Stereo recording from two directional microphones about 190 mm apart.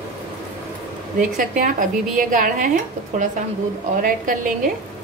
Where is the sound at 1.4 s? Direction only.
45° right (ahead or behind).